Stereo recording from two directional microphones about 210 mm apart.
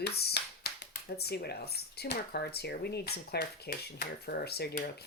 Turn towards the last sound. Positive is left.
turn(degrees=50)  # may be behind; listen again after turning